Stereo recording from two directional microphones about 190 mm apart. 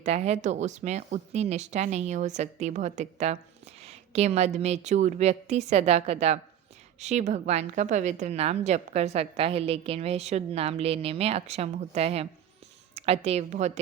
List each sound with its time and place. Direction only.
0.0 s a woman's voice: 35° right (ahead or behind)